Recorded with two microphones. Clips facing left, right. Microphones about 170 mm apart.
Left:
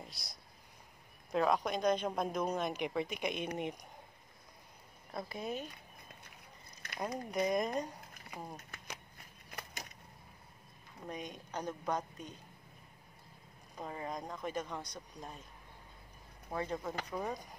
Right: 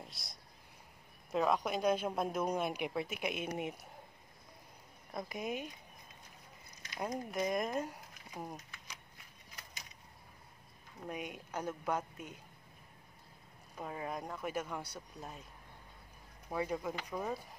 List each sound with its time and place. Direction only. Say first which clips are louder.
0.0 s a sound: left 1 dB; centre (ahead or behind)
1.3 s speech: left 1 dB; centre (ahead or behind)
5.1 s speech: even; 15° right (ahead or behind)
6.8 s a sound: left 2 dB; 60° left (ahead or behind)
7.2 s speech: left 3 dB; centre (ahead or behind)
8.5 s shuffling cards: left 3 dB; 55° left (ahead or behind)
9.5 s a sound: left 7 dB; 60° left (ahead or behind)
11.1 s speech: right 1 dB; 10° right (ahead or behind)
13.7 s speech: even; 5° right (ahead or behind)
16.4 s speech: right 1 dB; 10° right (ahead or behind)